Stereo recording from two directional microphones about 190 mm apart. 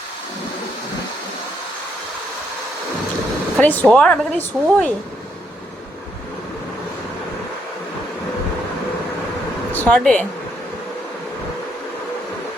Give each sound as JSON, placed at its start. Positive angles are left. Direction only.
{"t": 3.6, "sound": "speech", "side_deg": 5}
{"t": 9.7, "sound": "speech", "side_deg": 5}